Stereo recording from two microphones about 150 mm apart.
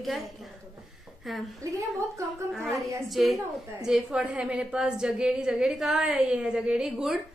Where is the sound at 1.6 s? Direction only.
20° right (ahead or behind).